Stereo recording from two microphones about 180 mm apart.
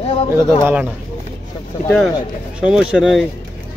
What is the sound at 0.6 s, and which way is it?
Speech, 10° right (ahead or behind).